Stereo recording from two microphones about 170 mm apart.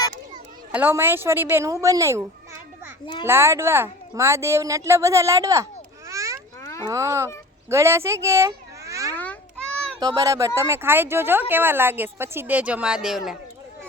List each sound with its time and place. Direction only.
0.7 s speech: 10° right (ahead or behind)
6.1 s a sound: 20° right (ahead or behind)
6.6 s a sound: 15° left (ahead or behind)
6.8 s speech: 20° right (ahead or behind)
9.1 s babbling: 10° left (ahead or behind)
10.0 s speech: 25° right (ahead or behind); by 13.3 s 5° right (ahead or behind)